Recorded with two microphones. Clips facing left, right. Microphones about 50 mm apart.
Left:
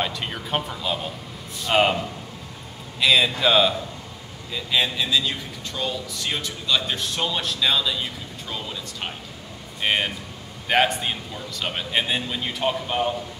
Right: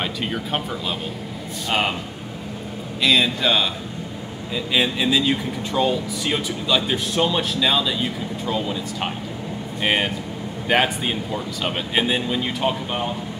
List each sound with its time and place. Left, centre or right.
0.0 s speech: centre
3.0 s speech: centre
4.7 s speech: centre